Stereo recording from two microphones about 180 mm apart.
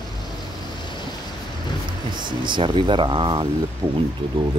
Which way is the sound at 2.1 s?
25° right (ahead or behind).